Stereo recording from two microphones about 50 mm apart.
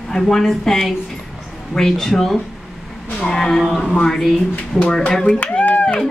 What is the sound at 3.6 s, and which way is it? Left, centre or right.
Speech, centre.